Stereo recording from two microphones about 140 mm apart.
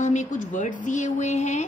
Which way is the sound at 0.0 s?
60° left (ahead or behind).